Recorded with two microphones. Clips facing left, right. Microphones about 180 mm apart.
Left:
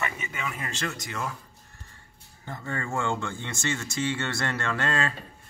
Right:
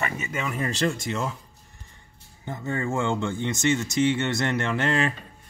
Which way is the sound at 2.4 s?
20° right (ahead or behind).